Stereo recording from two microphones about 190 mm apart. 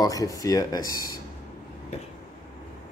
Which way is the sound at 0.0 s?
20° left (ahead or behind).